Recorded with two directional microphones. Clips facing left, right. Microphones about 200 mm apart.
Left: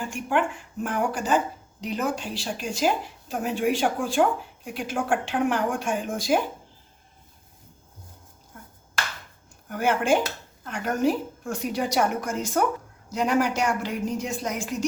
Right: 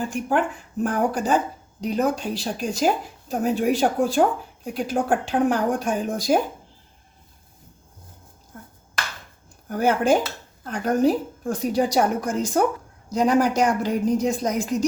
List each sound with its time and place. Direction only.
0.1 s speech: 40° right (ahead or behind)
9.6 s speech: 40° right (ahead or behind)